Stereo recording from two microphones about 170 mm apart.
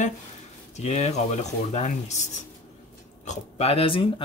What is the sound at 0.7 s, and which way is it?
Speech, 40° left (ahead or behind).